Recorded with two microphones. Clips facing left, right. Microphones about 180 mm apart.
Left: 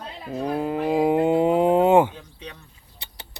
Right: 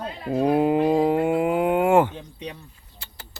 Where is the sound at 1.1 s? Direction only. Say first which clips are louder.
Left 2 dB; 20° left (ahead or behind).